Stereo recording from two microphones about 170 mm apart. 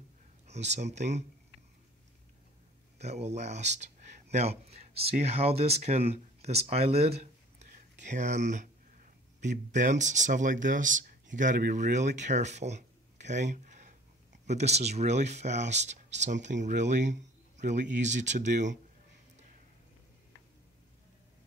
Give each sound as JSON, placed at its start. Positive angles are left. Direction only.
{"t": 0.5, "sound": "speech", "side_deg": -40}
{"t": 3.0, "sound": "speech", "side_deg": -40}